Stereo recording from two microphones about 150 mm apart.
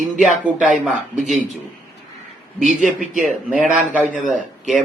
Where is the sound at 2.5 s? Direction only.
60° right (ahead or behind).